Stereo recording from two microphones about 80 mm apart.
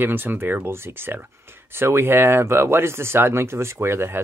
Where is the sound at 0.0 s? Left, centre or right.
Right.